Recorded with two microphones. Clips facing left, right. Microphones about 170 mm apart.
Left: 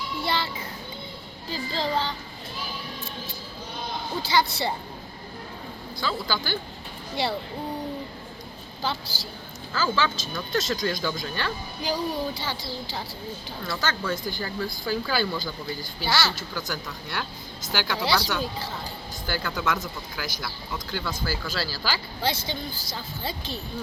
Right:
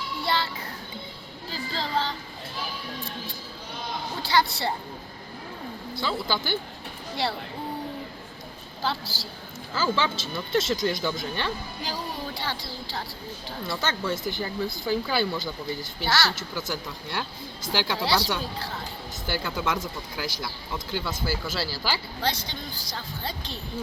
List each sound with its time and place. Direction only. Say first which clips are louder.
0.3 s speech: right 1 dB; centre (ahead or behind)
1.7 s speech: left 1 dB; centre (ahead or behind)
4.2 s speech: even; centre (ahead or behind)
6.0 s speech: even; 20° right (ahead or behind)
7.2 s speech: left 1 dB; centre (ahead or behind)
8.8 s speech: right 1 dB; centre (ahead or behind)
9.9 s speech: even; 25° right (ahead or behind)
11.9 s speech: left 7 dB; centre (ahead or behind)
14.1 s speech: right 1 dB; 20° right (ahead or behind)
16.0 s speech: even; centre (ahead or behind)
16.3 s speech: right 1 dB; 25° right (ahead or behind)
18.0 s speech: left 1 dB; centre (ahead or behind)
19.3 s speech: even; 20° right (ahead or behind)
22.2 s speech: left 2 dB; 5° left (ahead or behind)